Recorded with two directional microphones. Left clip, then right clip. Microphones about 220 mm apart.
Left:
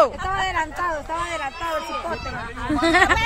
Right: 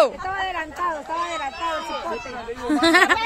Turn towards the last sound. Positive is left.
turn(degrees=-10)  # may be behind; listen again after turning